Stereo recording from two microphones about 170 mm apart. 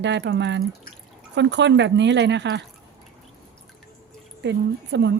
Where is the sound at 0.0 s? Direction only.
90° right.